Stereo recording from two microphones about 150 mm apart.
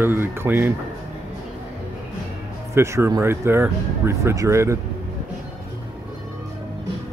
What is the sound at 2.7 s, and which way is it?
Speech, 15° right (ahead or behind).